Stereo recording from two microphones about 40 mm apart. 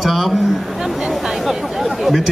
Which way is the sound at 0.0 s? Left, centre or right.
Centre.